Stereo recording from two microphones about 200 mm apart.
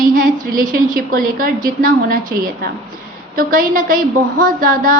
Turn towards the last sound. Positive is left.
turn(degrees=-45)  # may be behind; listen again after turning